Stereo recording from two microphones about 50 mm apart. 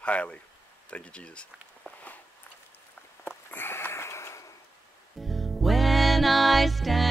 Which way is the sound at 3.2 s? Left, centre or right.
Left.